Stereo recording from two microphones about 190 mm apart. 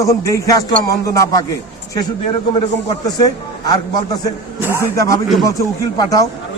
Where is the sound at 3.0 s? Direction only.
20° left (ahead or behind).